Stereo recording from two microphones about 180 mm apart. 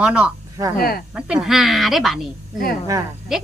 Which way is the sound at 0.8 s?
55° left (ahead or behind).